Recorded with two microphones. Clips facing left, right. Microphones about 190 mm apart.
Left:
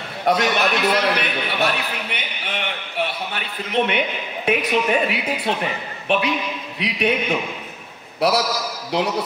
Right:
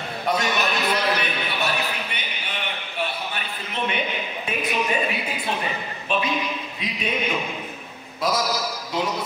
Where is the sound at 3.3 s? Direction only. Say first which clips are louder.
Left 7 dB; 65° left (ahead or behind).